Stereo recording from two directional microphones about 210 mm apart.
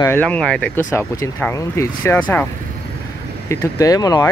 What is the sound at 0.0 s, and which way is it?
Speech, 10° left (ahead or behind).